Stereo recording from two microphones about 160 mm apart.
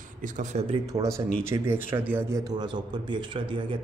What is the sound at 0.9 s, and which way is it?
A man's voice, 20° right (ahead or behind).